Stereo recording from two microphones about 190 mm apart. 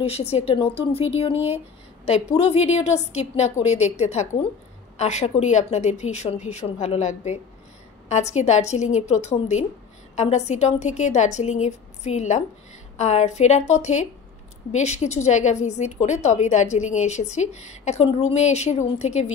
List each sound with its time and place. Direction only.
0.0 s a woman's voice: 30° left (ahead or behind)